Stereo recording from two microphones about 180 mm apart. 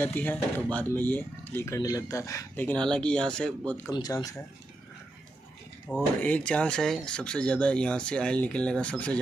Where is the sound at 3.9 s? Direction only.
20° left (ahead or behind).